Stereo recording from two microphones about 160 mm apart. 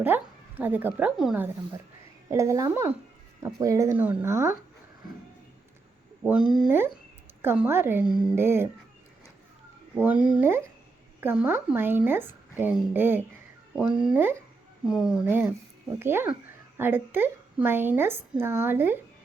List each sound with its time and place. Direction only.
0.0 s a woman's voice: 10° right (ahead or behind)
2.3 s a woman's voice: 20° right (ahead or behind)
6.2 s a woman's voice: 5° right (ahead or behind)
8.0 s speech: 30° right (ahead or behind)
8.3 s a woman's voice: 15° right (ahead or behind)
9.9 s a woman's voice: 10° right (ahead or behind)